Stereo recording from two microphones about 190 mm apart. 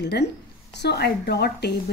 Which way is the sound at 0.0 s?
65° left (ahead or behind).